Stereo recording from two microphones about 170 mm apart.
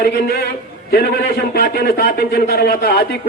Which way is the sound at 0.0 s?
70° left (ahead or behind).